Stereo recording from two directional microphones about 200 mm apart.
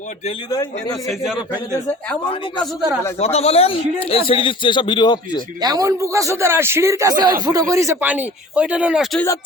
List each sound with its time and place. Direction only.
0.5 s a man's voice: 20° left (ahead or behind)
1.0 s a man's voice: 5° right (ahead or behind)
3.2 s a man's voice: 30° left (ahead or behind)
5.6 s speech: 20° right (ahead or behind)